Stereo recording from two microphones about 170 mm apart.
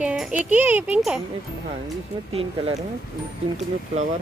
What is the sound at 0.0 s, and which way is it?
Speech, 5° right (ahead or behind).